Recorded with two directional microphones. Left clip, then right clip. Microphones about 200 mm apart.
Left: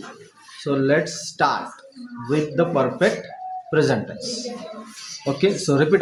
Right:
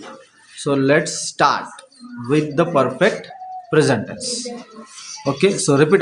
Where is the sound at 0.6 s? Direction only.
30° right (ahead or behind).